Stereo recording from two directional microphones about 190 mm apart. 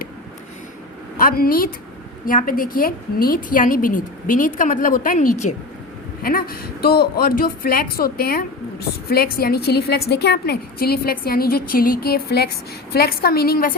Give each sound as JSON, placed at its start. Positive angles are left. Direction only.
{"t": 1.2, "sound": "a woman's voice", "side_deg": 50}